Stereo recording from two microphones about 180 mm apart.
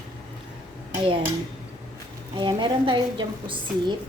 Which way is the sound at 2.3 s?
25° right (ahead or behind).